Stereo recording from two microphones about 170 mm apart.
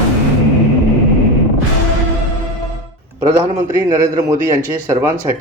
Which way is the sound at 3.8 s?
20° right (ahead or behind).